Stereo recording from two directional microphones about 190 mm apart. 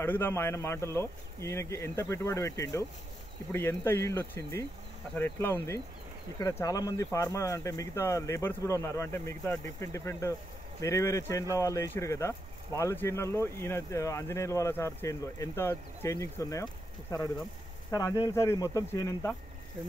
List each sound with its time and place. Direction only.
0.0 s speech: 10° left (ahead or behind)